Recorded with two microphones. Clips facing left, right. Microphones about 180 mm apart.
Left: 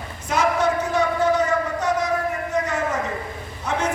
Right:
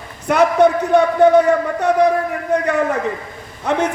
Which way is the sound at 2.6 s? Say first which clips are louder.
Right 7 dB; 65° right (ahead or behind).